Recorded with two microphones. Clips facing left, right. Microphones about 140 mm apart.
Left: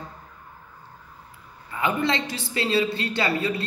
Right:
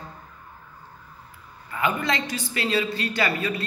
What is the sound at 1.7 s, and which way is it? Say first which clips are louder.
A man's voice: left 1 dB; 20° left (ahead or behind).